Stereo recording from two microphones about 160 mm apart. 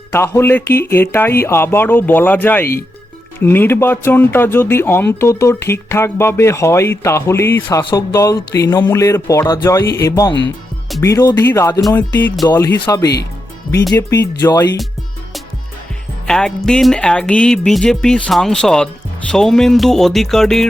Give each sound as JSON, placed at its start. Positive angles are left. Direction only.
{"t": 0.1, "sound": "speech", "side_deg": 15}
{"t": 12.5, "sound": "speech", "side_deg": 25}
{"t": 13.9, "sound": "speech", "side_deg": 20}
{"t": 16.2, "sound": "music", "side_deg": 5}